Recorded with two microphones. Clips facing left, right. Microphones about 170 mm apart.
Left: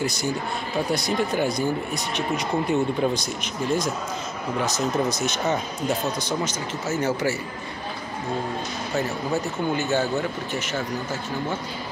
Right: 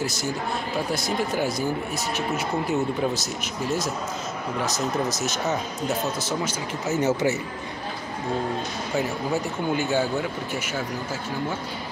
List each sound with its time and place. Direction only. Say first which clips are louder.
0.0 s speech: left 2 dB; 5° right (ahead or behind)
6.9 s speech: right 2 dB; 20° right (ahead or behind)
8.9 s speech: even; 10° right (ahead or behind)